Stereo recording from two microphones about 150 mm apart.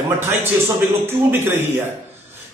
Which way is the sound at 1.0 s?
15° right (ahead or behind).